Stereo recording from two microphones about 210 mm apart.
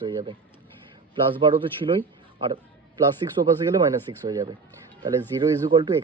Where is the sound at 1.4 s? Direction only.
25° right (ahead or behind).